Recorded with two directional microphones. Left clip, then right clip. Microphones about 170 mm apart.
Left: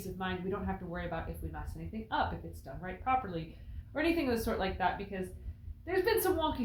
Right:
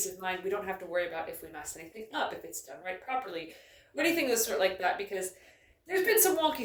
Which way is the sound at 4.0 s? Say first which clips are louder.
Right 3 dB; 10° right (ahead or behind).